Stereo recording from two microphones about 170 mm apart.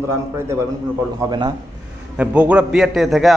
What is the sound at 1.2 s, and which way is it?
Speech, 25° right (ahead or behind).